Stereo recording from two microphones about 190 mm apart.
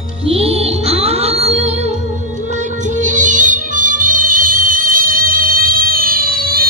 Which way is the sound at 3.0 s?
40° right (ahead or behind).